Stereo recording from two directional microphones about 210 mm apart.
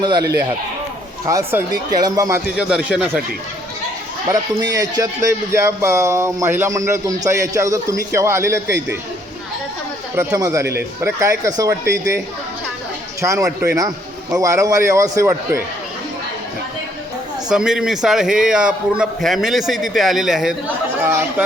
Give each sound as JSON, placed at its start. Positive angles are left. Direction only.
{"t": 0.0, "sound": "a man's voice", "side_deg": -20}
{"t": 1.3, "sound": "speech", "side_deg": -15}
{"t": 2.6, "sound": "a man's voice", "side_deg": -5}
{"t": 4.3, "sound": "speech", "side_deg": -15}
{"t": 10.2, "sound": "speech", "side_deg": -15}
{"t": 13.2, "sound": "speech", "side_deg": -15}
{"t": 17.5, "sound": "a man's voice", "side_deg": -5}